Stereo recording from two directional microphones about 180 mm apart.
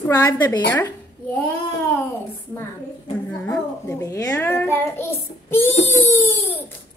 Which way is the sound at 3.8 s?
15° left (ahead or behind).